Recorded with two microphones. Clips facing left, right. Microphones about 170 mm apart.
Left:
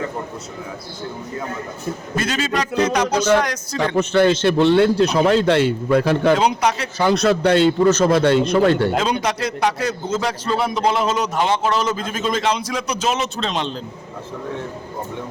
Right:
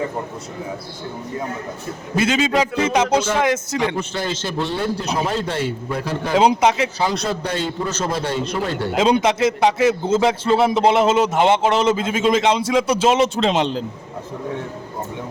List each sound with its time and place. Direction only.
2.1 s a man's voice: 10° right (ahead or behind)
2.9 s a man's voice: 25° right (ahead or behind)
3.8 s a man's voice: 65° left (ahead or behind)
6.4 s a man's voice: 25° right (ahead or behind)
7.0 s a man's voice: 70° left (ahead or behind)
9.0 s a man's voice: 25° right (ahead or behind)
13.6 s a man's voice: 80° right